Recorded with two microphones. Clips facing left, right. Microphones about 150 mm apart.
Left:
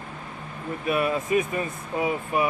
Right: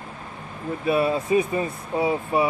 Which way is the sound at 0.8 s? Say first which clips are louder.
Right 3 dB; 30° right (ahead or behind).